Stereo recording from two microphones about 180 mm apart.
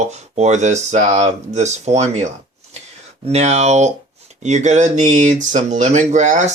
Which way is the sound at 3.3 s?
35° right (ahead or behind).